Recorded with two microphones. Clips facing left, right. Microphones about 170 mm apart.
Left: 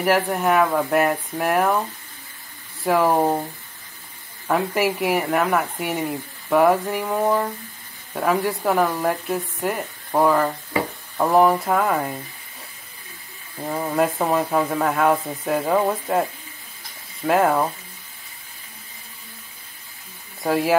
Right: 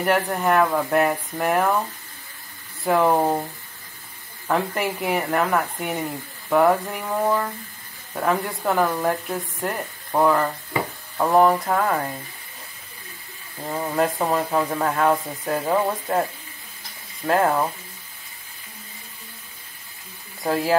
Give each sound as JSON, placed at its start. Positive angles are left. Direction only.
{"t": 0.0, "sound": "speech", "side_deg": 5}
{"t": 4.5, "sound": "speech", "side_deg": 5}
{"t": 13.7, "sound": "speech", "side_deg": 0}
{"t": 20.4, "sound": "speech", "side_deg": 5}